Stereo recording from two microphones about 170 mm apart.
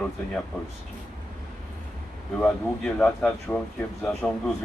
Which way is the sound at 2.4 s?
5° left (ahead or behind).